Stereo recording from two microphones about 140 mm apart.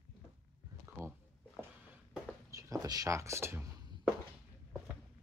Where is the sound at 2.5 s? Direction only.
20° right (ahead or behind).